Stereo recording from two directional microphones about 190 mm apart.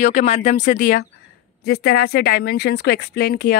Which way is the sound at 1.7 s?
55° left (ahead or behind).